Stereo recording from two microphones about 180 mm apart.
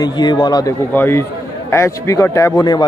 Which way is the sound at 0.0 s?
25° left (ahead or behind).